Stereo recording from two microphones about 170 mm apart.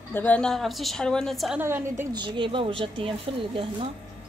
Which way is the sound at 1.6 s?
15° right (ahead or behind).